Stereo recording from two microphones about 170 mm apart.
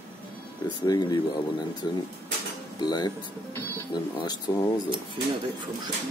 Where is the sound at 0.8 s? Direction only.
25° left (ahead or behind).